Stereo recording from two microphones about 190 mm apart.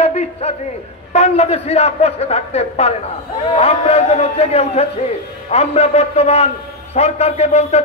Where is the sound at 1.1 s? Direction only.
35° left (ahead or behind).